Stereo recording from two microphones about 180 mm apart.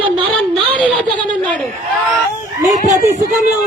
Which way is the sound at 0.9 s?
10° left (ahead or behind).